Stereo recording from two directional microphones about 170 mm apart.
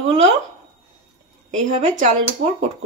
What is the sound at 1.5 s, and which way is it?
Speech, 45° right (ahead or behind).